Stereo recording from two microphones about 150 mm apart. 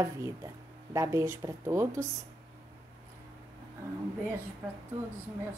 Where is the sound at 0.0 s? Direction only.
20° right (ahead or behind).